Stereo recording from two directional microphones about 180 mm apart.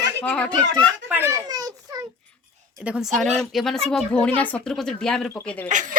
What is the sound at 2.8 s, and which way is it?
Speech, 5° right (ahead or behind).